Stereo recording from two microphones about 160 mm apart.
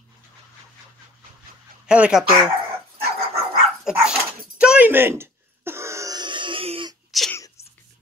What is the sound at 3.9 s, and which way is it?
Dog, 5° right (ahead or behind).